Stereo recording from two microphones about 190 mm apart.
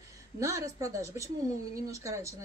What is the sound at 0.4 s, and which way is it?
Speech, 15° right (ahead or behind).